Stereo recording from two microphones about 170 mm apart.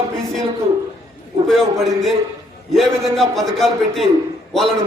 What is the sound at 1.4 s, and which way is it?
A man's voice, centre (ahead or behind).